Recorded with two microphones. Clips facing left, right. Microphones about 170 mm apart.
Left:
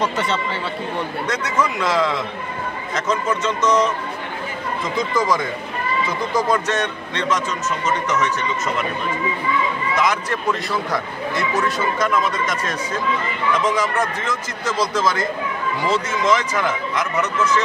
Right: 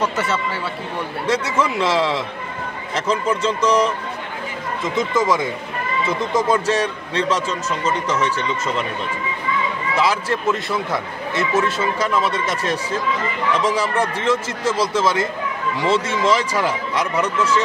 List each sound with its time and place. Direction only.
0.0 s speech: 5° right (ahead or behind)
1.2 s a man's voice: 30° right (ahead or behind)
4.8 s a man's voice: 25° right (ahead or behind)
9.9 s a man's voice: 30° right (ahead or behind)